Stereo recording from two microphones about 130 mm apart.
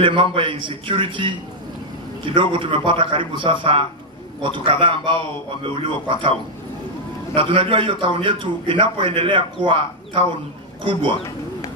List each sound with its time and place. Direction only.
0.0 s a man's voice: 40° right (ahead or behind)
7.3 s a man's voice: 40° right (ahead or behind)